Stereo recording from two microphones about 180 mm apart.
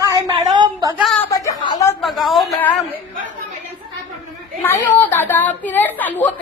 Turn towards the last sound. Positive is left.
turn(degrees=10)  # may be behind; listen again after turning